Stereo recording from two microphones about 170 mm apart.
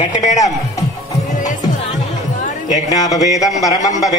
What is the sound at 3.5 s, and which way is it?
Speech, centre (ahead or behind).